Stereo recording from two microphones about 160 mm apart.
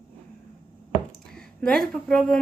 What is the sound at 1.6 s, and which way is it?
Speech, 5° left (ahead or behind).